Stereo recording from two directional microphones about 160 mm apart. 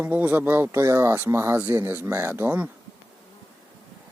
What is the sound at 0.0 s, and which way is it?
Speech, 10° right (ahead or behind).